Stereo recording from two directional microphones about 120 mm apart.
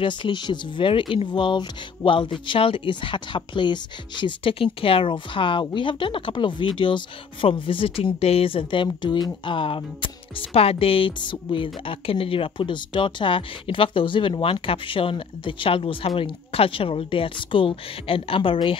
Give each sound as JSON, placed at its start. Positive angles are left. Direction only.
{"t": 0.0, "sound": "speech", "side_deg": 40}